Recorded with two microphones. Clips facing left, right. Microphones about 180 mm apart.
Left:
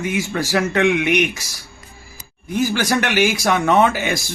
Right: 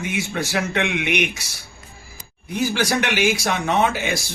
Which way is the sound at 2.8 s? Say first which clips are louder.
Left 1 dB; 45° left (ahead or behind).